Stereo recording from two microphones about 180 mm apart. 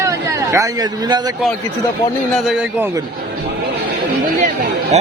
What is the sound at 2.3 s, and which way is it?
Speech, 5° right (ahead or behind).